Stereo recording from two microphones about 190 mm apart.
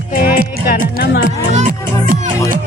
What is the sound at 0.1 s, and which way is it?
Music, 50° left (ahead or behind).